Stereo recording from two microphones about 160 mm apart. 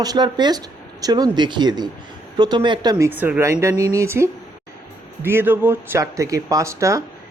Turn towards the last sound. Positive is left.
turn(degrees=-20)  # may be behind; listen again after turning